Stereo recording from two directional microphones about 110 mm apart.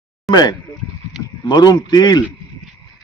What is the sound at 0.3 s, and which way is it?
A man's voice, 40° left (ahead or behind).